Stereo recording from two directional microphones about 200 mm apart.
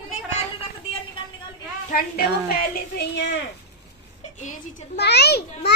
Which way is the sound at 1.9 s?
50° left (ahead or behind).